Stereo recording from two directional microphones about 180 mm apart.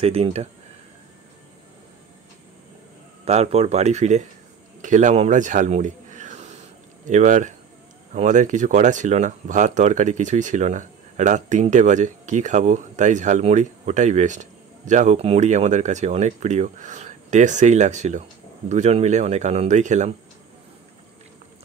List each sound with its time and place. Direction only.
0.0 s speech: 35° right (ahead or behind)
3.3 s speech: 35° right (ahead or behind)